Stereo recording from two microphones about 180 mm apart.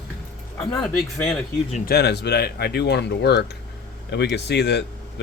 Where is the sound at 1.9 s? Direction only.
65° left (ahead or behind).